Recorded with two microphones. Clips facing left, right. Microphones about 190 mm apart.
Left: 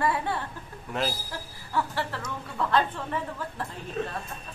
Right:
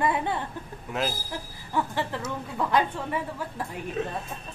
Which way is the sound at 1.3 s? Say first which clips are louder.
Right 2 dB; 15° right (ahead or behind).